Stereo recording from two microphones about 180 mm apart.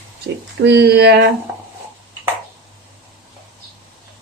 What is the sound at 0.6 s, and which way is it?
Speech, 70° right (ahead or behind).